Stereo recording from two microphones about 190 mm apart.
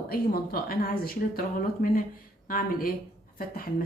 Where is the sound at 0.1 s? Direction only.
55° left (ahead or behind).